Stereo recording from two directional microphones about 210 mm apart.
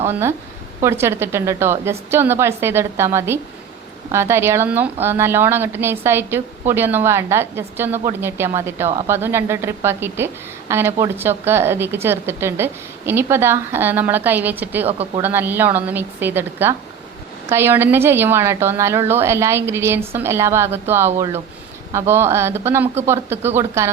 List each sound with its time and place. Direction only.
0.1 s a woman's voice: 10° right (ahead or behind)
14.8 s speech: 30° right (ahead or behind)
15.2 s a woman's voice: 10° right (ahead or behind)